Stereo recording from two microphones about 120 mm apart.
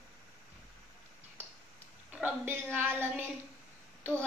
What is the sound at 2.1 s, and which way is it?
Speech, 15° right (ahead or behind).